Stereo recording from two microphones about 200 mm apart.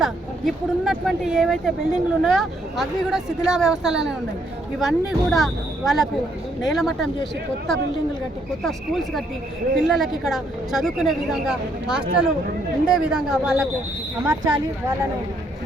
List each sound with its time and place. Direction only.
0.0 s speech: centre (ahead or behind)
8.6 s speech: centre (ahead or behind)
14.3 s speech: 15° right (ahead or behind)